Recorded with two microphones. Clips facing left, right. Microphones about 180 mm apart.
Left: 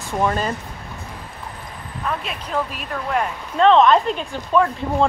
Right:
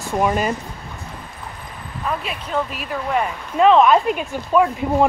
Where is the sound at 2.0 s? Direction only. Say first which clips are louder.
Right 1 dB; centre (ahead or behind).